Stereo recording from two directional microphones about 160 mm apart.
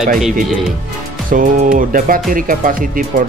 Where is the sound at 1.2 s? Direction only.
60° right (ahead or behind).